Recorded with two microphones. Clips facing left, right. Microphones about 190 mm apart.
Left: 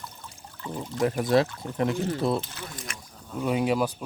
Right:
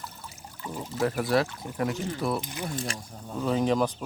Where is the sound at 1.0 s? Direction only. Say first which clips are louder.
Left 3 dB; 20° left (ahead or behind).